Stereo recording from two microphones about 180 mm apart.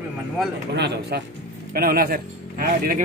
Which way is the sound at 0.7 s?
65° right (ahead or behind).